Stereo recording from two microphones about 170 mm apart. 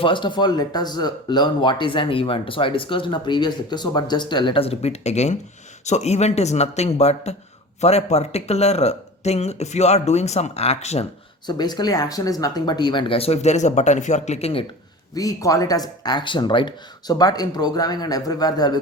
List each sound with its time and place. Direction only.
0.0 s speech: 30° left (ahead or behind)
11.4 s speech: 25° left (ahead or behind)
15.1 s speech: 20° left (ahead or behind)